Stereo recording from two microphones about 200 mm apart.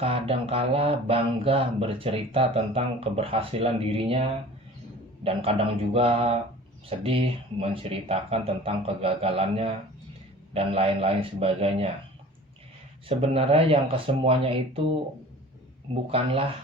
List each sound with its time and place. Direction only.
0.0 s speech: 30° right (ahead or behind)
13.1 s speech: 30° right (ahead or behind)